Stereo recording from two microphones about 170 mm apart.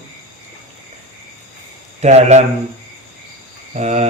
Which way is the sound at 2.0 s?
40° right (ahead or behind).